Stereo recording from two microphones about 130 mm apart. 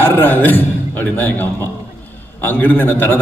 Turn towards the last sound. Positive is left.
turn(degrees=15)  # may be behind; listen again after turning